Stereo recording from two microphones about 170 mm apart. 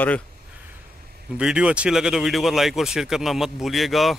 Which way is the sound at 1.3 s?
5° right (ahead or behind).